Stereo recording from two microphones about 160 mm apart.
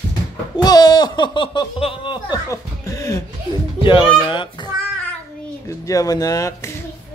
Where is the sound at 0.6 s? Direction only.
25° left (ahead or behind).